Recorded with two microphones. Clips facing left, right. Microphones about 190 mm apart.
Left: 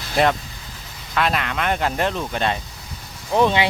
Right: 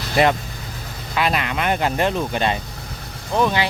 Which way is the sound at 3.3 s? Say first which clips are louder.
Left 2 dB; 20° left (ahead or behind).